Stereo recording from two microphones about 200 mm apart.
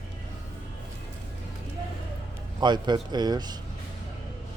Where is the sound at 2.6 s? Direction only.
20° right (ahead or behind).